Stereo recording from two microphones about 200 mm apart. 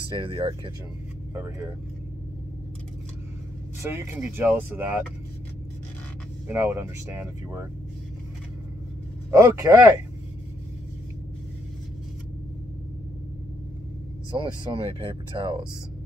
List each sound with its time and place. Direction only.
0.1 s speech: 25° right (ahead or behind)
3.8 s speech: 10° right (ahead or behind)
6.4 s speech: 10° right (ahead or behind)
9.3 s speech: 15° right (ahead or behind)
14.3 s speech: 20° right (ahead or behind)